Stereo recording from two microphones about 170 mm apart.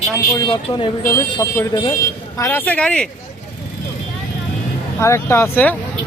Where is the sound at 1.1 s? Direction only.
15° left (ahead or behind).